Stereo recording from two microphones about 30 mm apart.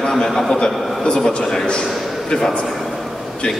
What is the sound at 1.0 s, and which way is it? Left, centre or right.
Speech, left.